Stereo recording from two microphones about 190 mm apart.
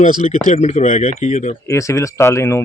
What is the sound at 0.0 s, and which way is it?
Speech, 40° left (ahead or behind).